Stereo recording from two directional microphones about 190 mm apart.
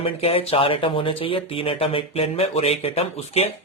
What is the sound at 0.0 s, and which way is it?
Speech, 30° left (ahead or behind).